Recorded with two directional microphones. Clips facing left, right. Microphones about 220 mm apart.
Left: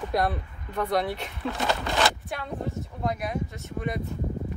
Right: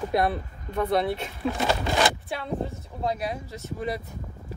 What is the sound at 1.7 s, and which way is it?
Speech, 15° right (ahead or behind).